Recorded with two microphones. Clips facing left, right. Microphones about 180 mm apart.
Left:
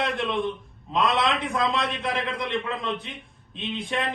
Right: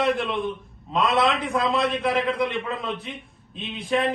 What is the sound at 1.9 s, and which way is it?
A man's voice, centre (ahead or behind).